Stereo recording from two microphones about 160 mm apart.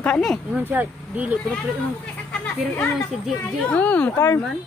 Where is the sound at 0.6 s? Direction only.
10° right (ahead or behind).